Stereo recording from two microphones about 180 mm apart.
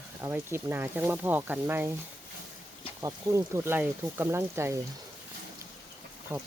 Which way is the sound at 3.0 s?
15° right (ahead or behind).